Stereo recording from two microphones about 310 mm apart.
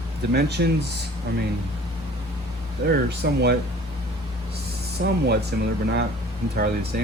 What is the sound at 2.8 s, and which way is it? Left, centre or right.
Speech, right.